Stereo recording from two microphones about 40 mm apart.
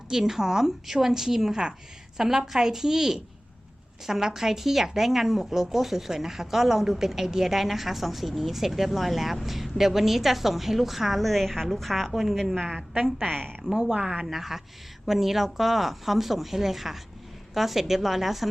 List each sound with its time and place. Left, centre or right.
0.1 s a woman's voice: centre
12.7 s a woman's voice: centre
13.2 s a woman's voice: centre
13.9 s speech: right
14.3 s a woman's voice: centre